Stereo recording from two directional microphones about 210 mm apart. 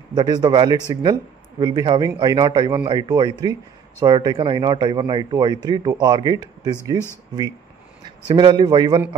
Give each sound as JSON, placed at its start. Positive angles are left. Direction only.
{"t": 0.1, "sound": "a man's voice", "side_deg": -20}
{"t": 8.3, "sound": "a man's voice", "side_deg": -20}